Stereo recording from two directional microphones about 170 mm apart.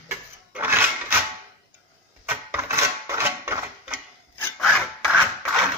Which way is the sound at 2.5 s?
15° right (ahead or behind).